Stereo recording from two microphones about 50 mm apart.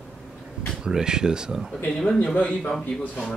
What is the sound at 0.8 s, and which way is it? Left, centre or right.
Speech, centre.